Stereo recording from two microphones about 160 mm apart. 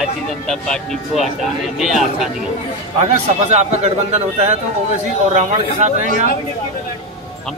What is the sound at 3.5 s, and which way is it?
A man's voice, 45° right (ahead or behind).